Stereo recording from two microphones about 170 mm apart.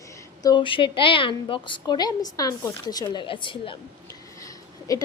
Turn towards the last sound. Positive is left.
turn(degrees=20)  # may be behind; listen again after turning